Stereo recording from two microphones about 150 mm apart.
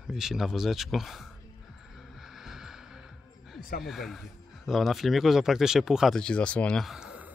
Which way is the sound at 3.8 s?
Centre (ahead or behind).